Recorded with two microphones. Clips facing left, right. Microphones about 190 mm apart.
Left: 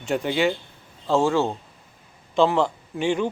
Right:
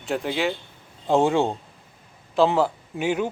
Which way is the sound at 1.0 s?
20° right (ahead or behind).